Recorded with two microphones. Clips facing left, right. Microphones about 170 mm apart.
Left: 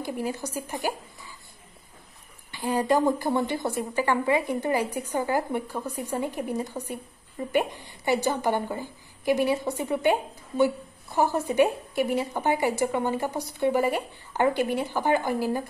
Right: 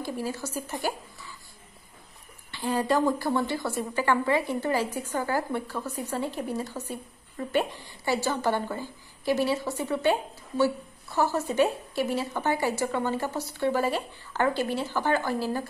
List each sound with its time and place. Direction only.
0.0 s a woman's voice: 15° left (ahead or behind)
2.5 s a woman's voice: 15° left (ahead or behind)